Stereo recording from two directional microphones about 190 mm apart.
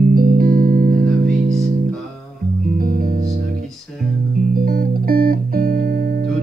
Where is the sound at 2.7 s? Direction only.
50° right (ahead or behind).